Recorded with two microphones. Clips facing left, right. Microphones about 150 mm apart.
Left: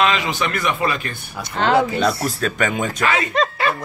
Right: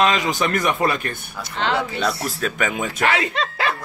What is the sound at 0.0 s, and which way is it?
Speech, 40° right (ahead or behind).